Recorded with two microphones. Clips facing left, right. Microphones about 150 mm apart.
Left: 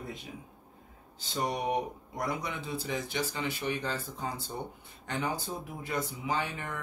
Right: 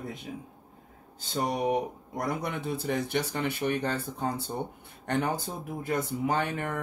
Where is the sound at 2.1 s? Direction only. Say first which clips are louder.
Right 3 dB; 50° right (ahead or behind).